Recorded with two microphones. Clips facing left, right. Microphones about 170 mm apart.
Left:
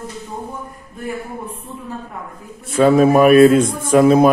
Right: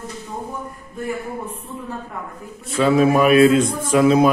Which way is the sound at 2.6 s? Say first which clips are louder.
Left 4 dB; 50° left (ahead or behind).